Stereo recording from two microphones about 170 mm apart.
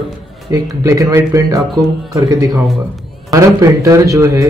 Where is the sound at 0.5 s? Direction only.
20° right (ahead or behind).